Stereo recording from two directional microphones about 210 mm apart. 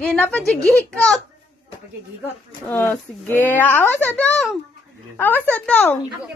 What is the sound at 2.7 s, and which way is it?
A woman's voice, 10° left (ahead or behind).